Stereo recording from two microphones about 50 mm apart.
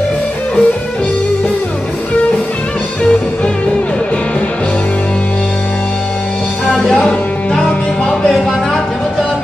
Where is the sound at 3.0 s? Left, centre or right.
Centre.